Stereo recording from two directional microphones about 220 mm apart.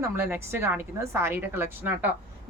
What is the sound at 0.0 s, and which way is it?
A woman's voice, 10° right (ahead or behind).